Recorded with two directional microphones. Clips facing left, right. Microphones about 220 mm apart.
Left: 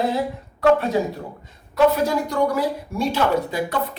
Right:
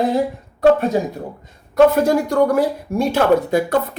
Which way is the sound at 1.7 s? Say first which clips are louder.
Right 5 dB; 50° right (ahead or behind).